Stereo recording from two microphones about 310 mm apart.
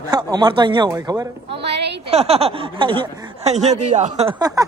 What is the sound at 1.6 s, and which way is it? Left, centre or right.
Speech, right.